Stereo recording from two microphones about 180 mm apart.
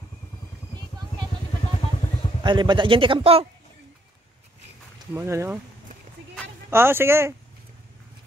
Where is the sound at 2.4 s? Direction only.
25° right (ahead or behind).